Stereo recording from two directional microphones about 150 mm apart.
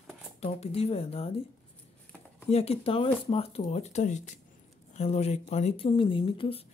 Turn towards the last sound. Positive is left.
turn(degrees=40)  # may be behind; listen again after turning